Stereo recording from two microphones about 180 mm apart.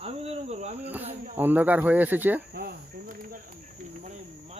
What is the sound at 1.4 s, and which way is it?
Speech, 10° right (ahead or behind).